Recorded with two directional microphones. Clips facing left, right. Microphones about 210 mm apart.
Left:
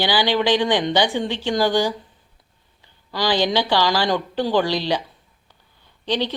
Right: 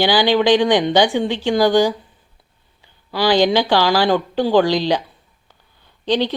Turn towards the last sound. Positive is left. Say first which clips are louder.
# right 5 dB
turn(degrees=-15)  # may be behind; listen again after turning